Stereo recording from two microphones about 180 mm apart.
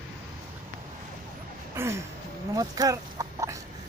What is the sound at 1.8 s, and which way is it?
A man's voice, 15° right (ahead or behind).